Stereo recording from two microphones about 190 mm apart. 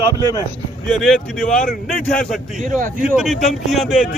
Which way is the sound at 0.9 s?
Centre (ahead or behind).